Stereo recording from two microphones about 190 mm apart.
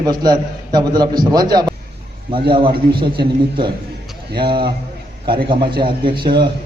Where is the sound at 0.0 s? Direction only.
20° right (ahead or behind).